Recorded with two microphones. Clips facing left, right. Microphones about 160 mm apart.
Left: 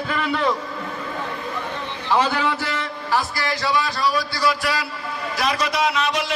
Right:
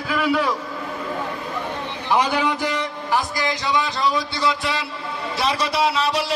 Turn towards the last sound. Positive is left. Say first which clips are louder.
# right 1 dB
turn(degrees=-35)  # may be behind; listen again after turning